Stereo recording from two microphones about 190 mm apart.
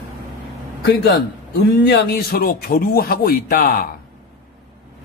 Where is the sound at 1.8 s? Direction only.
60° left (ahead or behind).